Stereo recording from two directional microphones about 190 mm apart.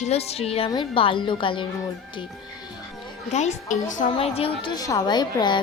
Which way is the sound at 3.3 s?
35° left (ahead or behind).